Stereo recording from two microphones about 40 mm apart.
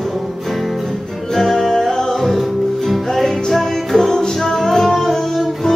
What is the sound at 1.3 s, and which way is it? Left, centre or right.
Music, centre.